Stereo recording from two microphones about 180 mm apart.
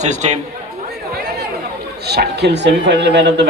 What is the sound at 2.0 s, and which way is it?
Speech, 65° right (ahead or behind).